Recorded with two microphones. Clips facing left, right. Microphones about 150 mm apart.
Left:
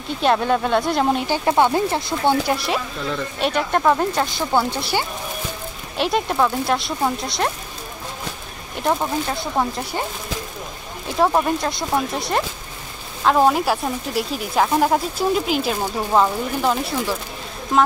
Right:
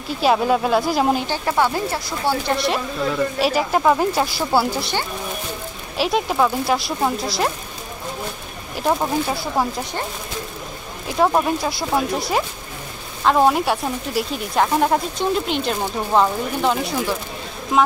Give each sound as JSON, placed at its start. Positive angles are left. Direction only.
{"t": 0.2, "sound": "a woman's voice", "side_deg": -5}
{"t": 1.4, "sound": "speech", "side_deg": 20}
{"t": 2.4, "sound": "a woman's voice", "side_deg": 0}
{"t": 5.9, "sound": "a woman's voice", "side_deg": 0}
{"t": 8.7, "sound": "a woman's voice", "side_deg": -5}
{"t": 11.1, "sound": "a woman's voice", "side_deg": 0}